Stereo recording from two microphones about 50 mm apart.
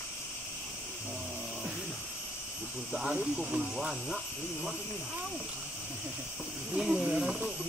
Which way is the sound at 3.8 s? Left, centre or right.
Centre.